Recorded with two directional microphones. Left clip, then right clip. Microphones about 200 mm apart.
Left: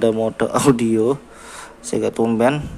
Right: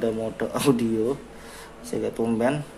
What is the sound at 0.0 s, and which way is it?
Speech, 25° left (ahead or behind).